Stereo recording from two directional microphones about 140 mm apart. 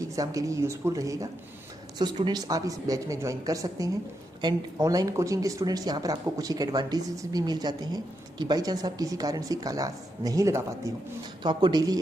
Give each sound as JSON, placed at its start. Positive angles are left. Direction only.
{"t": 0.0, "sound": "speech", "side_deg": -25}